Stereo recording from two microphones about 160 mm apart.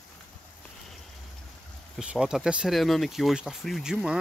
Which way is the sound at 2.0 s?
5° right (ahead or behind).